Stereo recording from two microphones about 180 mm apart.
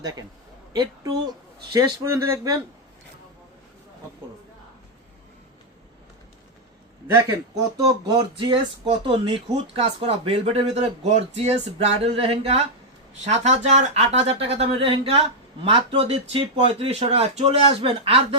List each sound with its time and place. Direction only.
0.0 s speech: 20° right (ahead or behind)
7.8 s speech: 20° right (ahead or behind)